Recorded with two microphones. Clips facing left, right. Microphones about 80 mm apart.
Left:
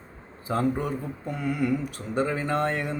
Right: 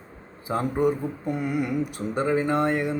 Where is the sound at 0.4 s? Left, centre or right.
Centre.